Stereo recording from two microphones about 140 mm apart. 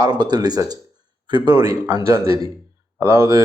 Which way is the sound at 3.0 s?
20° right (ahead or behind).